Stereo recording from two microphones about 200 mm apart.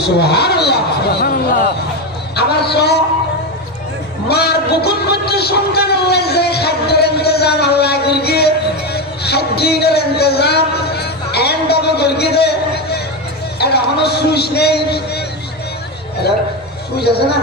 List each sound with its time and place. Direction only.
0.0 s a woman's voice: 55° left (ahead or behind)
2.3 s a man's voice: 55° left (ahead or behind)
4.3 s a sound: 55° left (ahead or behind)
13.6 s a man's voice: 55° left (ahead or behind)
17.0 s a man's voice: 55° left (ahead or behind)